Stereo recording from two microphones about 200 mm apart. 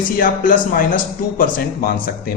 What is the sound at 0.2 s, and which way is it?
A man's voice, 45° left (ahead or behind).